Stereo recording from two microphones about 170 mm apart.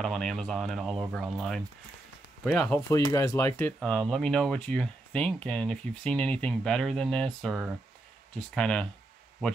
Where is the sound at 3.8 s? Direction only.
Centre (ahead or behind).